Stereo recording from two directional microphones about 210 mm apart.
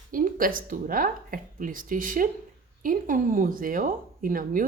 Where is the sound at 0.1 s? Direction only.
40° right (ahead or behind).